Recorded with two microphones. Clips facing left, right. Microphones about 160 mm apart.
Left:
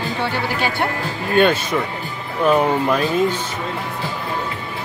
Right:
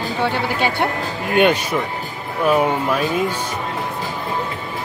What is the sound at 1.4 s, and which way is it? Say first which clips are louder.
Speech: even; 15° right (ahead or behind).